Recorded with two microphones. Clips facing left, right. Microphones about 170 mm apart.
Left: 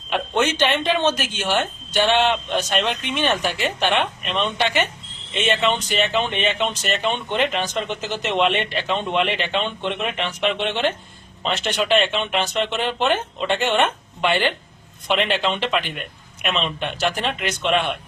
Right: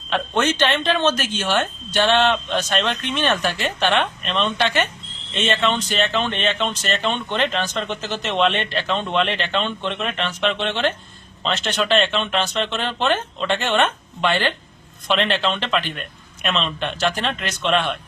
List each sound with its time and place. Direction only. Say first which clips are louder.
0.1 s speech: even; 15° left (ahead or behind)